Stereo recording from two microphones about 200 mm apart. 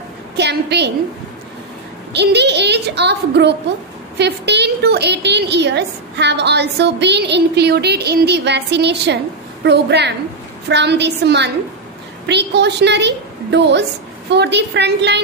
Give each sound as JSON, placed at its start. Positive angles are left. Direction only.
{"t": 0.4, "sound": "a woman's voice", "side_deg": -60}
{"t": 2.1, "sound": "a woman's voice", "side_deg": -60}